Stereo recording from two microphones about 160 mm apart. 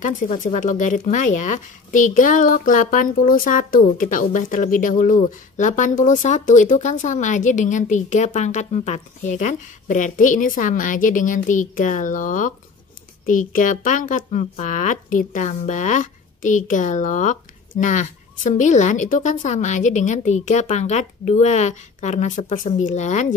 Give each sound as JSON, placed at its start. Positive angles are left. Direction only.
{"t": 0.3, "sound": "a woman's voice", "side_deg": 50}